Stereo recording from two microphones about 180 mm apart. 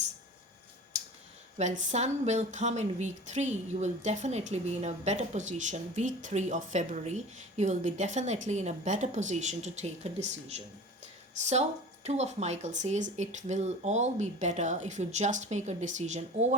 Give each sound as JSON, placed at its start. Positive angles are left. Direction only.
{"t": 1.5, "sound": "speech", "side_deg": -40}
{"t": 12.0, "sound": "speech", "side_deg": -40}